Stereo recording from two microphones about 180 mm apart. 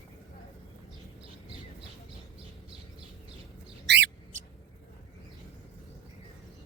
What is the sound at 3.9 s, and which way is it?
Bird, 75° right (ahead or behind).